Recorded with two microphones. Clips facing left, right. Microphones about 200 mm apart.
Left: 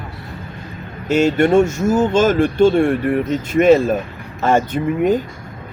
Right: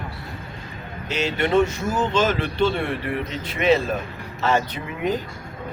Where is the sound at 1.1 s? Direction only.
50° left (ahead or behind).